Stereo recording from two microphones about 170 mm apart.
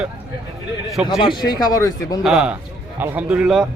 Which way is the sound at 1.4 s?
25° left (ahead or behind).